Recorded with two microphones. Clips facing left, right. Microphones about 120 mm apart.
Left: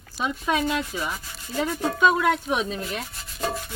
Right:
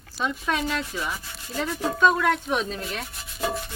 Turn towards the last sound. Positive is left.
turn(degrees=0)  # may be behind; listen again after turning